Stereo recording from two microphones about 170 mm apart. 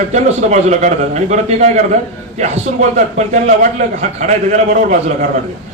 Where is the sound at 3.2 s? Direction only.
45° right (ahead or behind).